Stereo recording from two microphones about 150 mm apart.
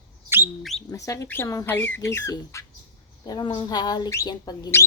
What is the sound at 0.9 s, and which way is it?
Speech, 20° left (ahead or behind).